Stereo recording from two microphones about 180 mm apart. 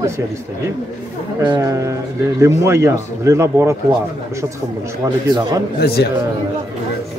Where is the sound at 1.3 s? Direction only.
20° right (ahead or behind).